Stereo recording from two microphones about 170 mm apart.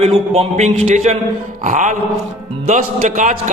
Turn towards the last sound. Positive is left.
turn(degrees=-45)  # may be behind; listen again after turning